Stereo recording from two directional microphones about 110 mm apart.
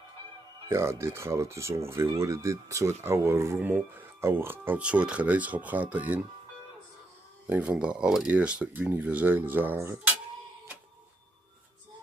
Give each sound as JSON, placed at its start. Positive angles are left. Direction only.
{"t": 0.7, "sound": "speech", "side_deg": -25}
{"t": 7.4, "sound": "speech", "side_deg": -15}